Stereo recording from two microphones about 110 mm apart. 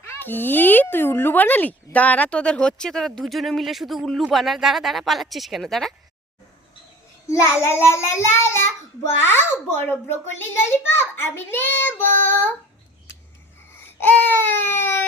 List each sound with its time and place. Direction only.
0.0 s speech: 20° left (ahead or behind); by 5.9 s 5° left (ahead or behind)
7.3 s a child's voice: 25° left (ahead or behind)
14.0 s a child's voice: 15° left (ahead or behind)